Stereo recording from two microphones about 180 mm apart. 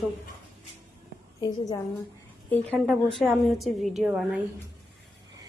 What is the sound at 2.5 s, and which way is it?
Speech, 10° left (ahead or behind).